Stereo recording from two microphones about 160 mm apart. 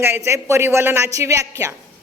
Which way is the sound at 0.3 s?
15° right (ahead or behind).